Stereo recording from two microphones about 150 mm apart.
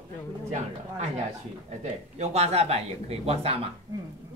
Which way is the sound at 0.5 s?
50° right (ahead or behind).